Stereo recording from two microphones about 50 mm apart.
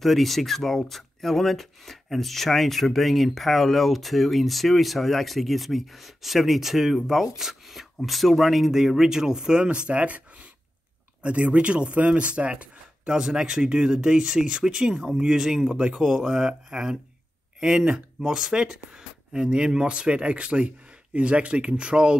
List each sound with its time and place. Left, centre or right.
0.0 s speech: centre; by 22.1 s right